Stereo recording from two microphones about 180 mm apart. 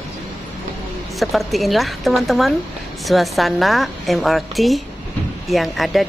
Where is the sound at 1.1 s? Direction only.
Centre (ahead or behind).